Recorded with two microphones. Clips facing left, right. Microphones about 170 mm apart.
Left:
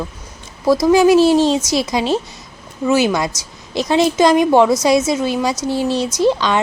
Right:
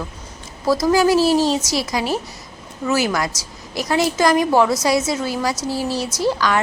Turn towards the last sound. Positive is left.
turn(degrees=20)  # may be behind; listen again after turning